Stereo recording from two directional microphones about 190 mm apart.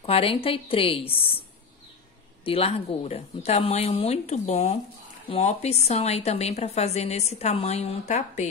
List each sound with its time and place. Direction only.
0.0 s a woman's voice: 30° left (ahead or behind)
2.4 s a woman's voice: 30° left (ahead or behind)